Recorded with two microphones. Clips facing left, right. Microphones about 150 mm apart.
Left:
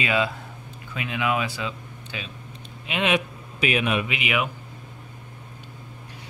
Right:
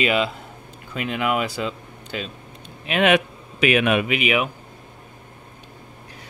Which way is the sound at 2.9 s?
60° right (ahead or behind).